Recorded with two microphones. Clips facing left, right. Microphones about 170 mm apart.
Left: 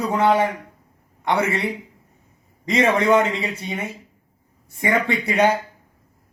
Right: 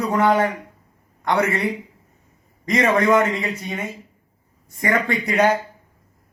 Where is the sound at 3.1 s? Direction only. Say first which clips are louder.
Even; 30° left (ahead or behind).